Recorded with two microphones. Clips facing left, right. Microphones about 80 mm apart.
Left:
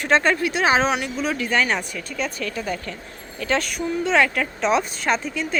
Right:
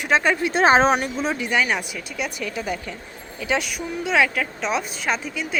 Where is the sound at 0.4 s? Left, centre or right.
Right.